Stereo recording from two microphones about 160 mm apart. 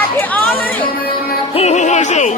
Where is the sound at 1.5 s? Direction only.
45° left (ahead or behind).